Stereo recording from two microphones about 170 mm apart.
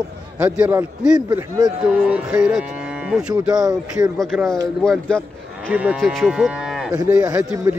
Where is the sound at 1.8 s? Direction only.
5° right (ahead or behind).